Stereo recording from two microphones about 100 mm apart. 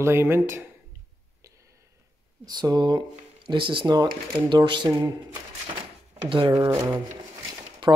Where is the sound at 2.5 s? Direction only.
45° right (ahead or behind).